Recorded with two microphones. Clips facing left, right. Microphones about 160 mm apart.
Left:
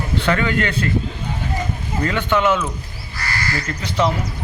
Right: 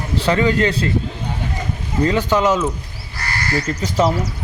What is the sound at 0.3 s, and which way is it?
Speech, 30° right (ahead or behind).